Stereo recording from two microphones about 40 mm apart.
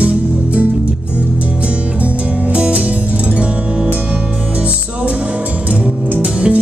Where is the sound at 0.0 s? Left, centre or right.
Right.